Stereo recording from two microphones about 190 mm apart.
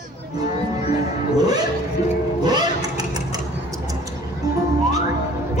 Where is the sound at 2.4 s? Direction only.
20° right (ahead or behind).